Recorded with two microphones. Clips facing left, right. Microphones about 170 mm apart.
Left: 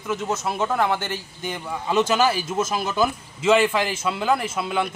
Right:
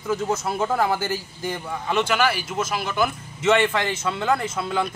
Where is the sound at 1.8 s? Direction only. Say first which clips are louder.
Left 3 dB; 20° left (ahead or behind).